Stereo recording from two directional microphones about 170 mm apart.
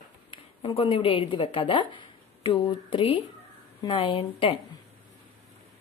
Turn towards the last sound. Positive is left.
turn(degrees=35)  # may be behind; listen again after turning